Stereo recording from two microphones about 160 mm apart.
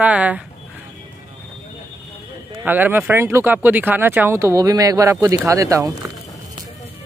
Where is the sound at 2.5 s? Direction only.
10° right (ahead or behind).